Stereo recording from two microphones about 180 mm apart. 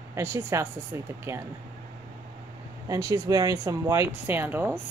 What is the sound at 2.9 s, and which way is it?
A woman's voice, 20° right (ahead or behind).